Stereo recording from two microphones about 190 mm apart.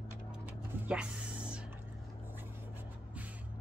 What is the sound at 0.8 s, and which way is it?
Music, 5° right (ahead or behind).